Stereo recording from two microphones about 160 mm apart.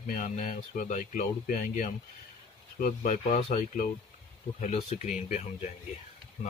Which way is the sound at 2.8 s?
55° left (ahead or behind).